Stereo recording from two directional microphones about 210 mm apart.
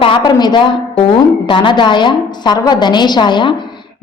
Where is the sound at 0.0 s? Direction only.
20° left (ahead or behind).